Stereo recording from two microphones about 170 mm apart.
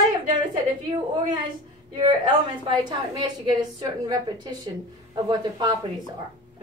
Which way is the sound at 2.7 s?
25° right (ahead or behind).